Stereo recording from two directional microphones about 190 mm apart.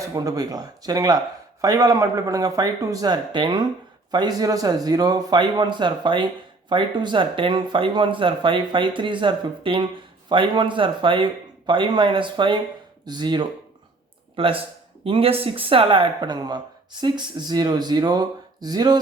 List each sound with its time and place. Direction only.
0.0 s a man's voice: 20° right (ahead or behind)